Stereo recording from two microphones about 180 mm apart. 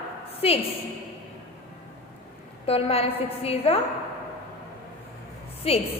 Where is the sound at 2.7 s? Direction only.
35° left (ahead or behind).